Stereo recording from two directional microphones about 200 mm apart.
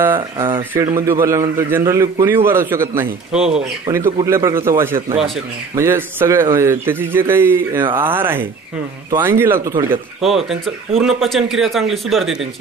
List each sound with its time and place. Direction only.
0.0 s a man's voice: 10° right (ahead or behind)
0.5 s speech: 25° right (ahead or behind)
0.9 s a man's voice: 15° right (ahead or behind)
10.2 s speech: centre (ahead or behind)